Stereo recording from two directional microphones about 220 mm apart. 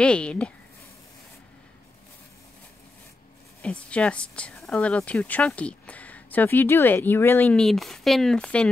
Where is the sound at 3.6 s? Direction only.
5° left (ahead or behind).